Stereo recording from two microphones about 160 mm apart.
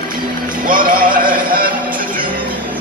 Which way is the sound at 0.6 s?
60° right (ahead or behind).